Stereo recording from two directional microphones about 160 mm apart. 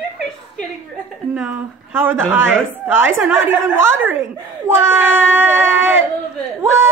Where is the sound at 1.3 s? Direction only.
5° right (ahead or behind).